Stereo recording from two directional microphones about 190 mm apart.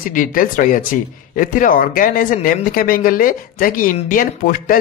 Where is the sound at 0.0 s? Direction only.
45° left (ahead or behind).